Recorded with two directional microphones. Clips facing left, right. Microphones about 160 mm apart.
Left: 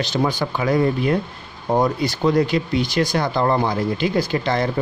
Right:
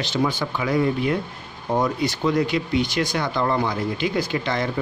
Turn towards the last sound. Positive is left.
turn(degrees=35)  # may be behind; listen again after turning